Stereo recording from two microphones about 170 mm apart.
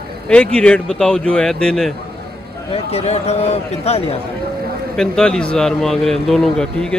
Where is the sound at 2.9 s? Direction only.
40° left (ahead or behind).